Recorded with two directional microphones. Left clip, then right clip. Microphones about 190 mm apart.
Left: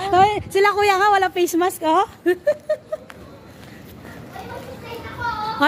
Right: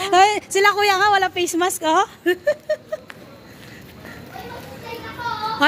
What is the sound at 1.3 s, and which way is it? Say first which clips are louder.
Speech: left 2 dB; 20° left (ahead or behind).